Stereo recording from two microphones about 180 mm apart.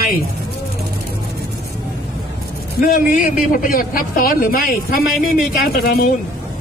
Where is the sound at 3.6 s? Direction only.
50° left (ahead or behind).